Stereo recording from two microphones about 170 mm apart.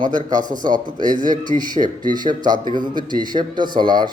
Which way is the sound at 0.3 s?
50° right (ahead or behind).